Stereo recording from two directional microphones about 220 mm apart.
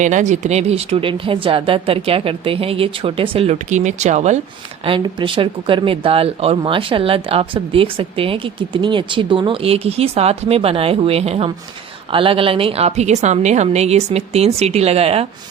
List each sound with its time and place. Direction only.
0.0 s speech: 35° right (ahead or behind)